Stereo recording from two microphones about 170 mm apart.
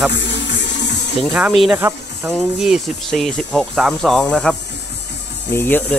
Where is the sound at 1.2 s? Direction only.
5° right (ahead or behind).